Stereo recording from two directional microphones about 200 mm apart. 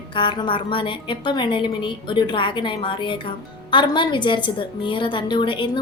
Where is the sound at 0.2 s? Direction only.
25° left (ahead or behind).